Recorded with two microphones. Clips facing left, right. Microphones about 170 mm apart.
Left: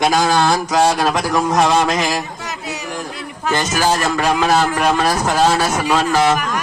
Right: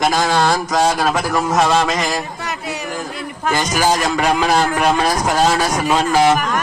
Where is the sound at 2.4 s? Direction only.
60° right (ahead or behind).